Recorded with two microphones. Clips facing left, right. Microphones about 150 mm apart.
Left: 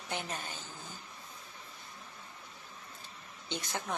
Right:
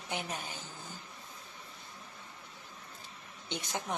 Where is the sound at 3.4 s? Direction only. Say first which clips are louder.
Even; 15° right (ahead or behind).